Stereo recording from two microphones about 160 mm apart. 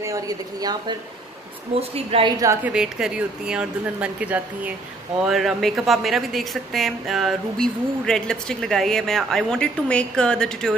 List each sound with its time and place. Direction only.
0.0 s a woman's voice: 20° right (ahead or behind)
1.8 s a woman's voice: 35° right (ahead or behind)
2.4 s speech: 15° right (ahead or behind)
2.7 s a woman's voice: 5° right (ahead or behind)